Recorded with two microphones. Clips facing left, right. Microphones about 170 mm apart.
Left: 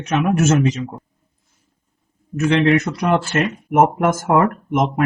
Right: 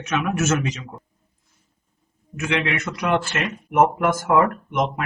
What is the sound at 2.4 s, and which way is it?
Speech, 40° left (ahead or behind).